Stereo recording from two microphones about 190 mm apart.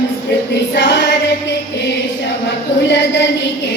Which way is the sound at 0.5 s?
65° left (ahead or behind).